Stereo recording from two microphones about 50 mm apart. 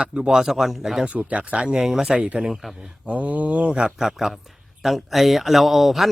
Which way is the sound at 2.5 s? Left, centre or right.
Centre.